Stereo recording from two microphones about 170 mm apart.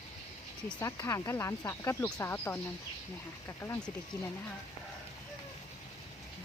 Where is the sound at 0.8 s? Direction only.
15° left (ahead or behind).